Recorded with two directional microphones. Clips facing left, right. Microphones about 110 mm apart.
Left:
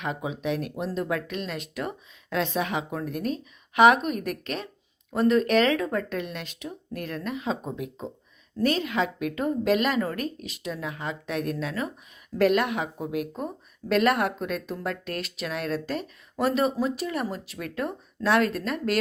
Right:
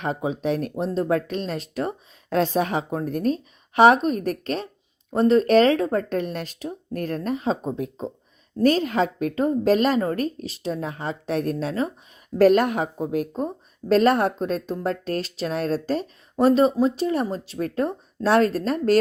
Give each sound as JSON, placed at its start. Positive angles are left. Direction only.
{"t": 0.0, "sound": "a woman's voice", "side_deg": -40}